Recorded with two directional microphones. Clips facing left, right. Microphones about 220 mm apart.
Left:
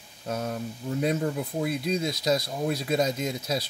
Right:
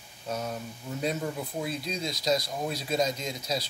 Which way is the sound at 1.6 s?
55° left (ahead or behind).